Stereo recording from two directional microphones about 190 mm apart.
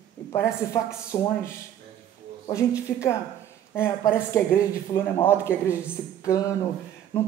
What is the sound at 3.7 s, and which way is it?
Speech, 10° left (ahead or behind).